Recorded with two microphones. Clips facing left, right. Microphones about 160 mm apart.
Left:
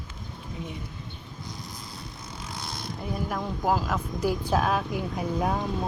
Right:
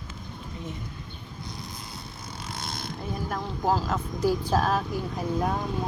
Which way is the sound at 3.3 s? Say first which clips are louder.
Even; 10° left (ahead or behind).